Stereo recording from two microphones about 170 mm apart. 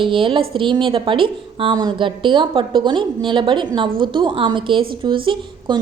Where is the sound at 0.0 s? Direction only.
30° right (ahead or behind).